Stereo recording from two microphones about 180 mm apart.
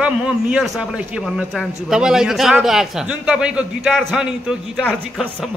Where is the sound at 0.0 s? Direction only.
5° right (ahead or behind).